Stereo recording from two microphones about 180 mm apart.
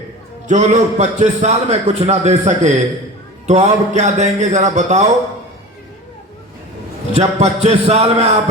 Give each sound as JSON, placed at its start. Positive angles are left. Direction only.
{"t": 0.4, "sound": "a man's voice", "side_deg": -40}
{"t": 7.1, "sound": "a man's voice", "side_deg": -40}